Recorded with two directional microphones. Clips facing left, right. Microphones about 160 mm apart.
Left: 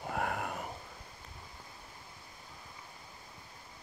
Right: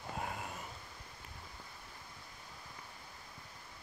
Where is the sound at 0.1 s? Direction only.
65° left (ahead or behind).